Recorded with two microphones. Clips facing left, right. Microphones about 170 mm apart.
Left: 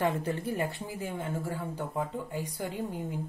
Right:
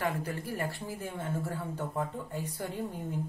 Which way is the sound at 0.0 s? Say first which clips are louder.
Left 4 dB; 25° left (ahead or behind).